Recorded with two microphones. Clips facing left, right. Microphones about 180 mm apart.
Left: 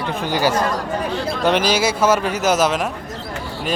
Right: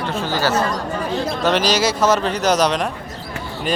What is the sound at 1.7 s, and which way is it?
Speech, 10° left (ahead or behind).